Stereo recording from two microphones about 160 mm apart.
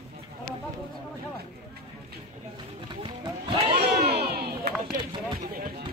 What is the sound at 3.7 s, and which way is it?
Crowd, 80° right.